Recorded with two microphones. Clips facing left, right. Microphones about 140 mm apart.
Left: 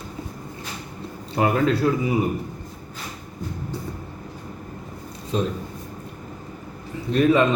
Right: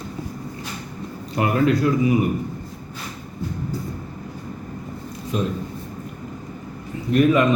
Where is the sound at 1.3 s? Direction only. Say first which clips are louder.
Right 1 dB; 30° left (ahead or behind).